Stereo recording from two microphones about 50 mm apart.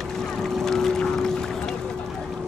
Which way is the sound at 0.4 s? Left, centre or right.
Centre.